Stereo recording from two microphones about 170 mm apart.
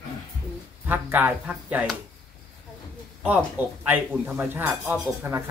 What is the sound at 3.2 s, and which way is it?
A man's voice, 10° right (ahead or behind).